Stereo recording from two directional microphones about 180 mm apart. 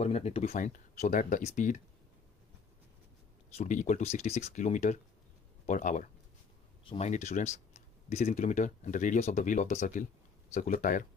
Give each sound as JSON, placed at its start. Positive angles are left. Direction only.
{"t": 0.0, "sound": "speech", "side_deg": 35}
{"t": 3.5, "sound": "speech", "side_deg": 40}